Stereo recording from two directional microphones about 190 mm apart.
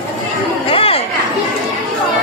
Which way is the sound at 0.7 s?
30° left (ahead or behind).